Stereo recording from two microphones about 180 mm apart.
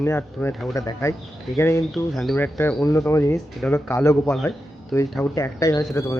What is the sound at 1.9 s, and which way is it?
Speech, centre (ahead or behind).